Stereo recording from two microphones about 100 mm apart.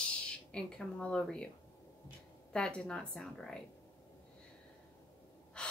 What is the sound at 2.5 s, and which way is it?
Speech, 5° left (ahead or behind).